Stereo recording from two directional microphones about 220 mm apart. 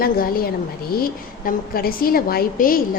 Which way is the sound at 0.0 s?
40° left (ahead or behind).